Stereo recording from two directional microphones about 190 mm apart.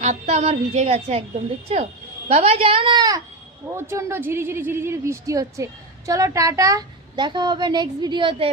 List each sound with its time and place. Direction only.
0.0 s a woman's voice: 35° right (ahead or behind)
2.3 s a woman's voice: 30° right (ahead or behind)